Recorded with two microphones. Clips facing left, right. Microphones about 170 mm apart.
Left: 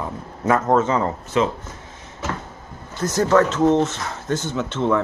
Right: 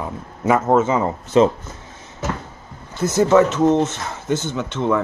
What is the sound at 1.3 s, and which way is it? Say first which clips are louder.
Speech: right 6 dB; 35° right (ahead or behind).